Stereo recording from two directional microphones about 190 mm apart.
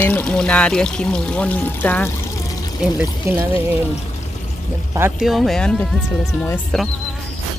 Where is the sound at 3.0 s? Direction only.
10° right (ahead or behind).